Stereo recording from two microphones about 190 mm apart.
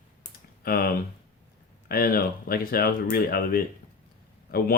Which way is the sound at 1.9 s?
50° left (ahead or behind).